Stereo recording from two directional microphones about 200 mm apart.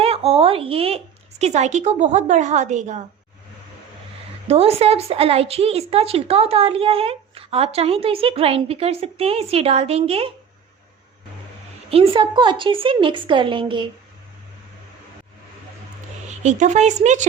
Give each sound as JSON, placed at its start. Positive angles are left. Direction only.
{"t": 0.0, "sound": "speech", "side_deg": -30}
{"t": 4.4, "sound": "a woman's voice", "side_deg": -30}
{"t": 11.9, "sound": "a woman's voice", "side_deg": -30}
{"t": 16.4, "sound": "speech", "side_deg": -35}